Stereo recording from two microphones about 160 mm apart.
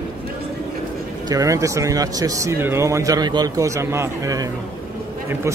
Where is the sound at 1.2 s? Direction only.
20° right (ahead or behind).